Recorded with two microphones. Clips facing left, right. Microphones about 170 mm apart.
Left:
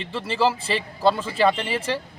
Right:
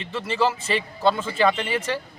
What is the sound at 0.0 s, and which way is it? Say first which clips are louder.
Speech: left 1 dB; 30° left (ahead or behind).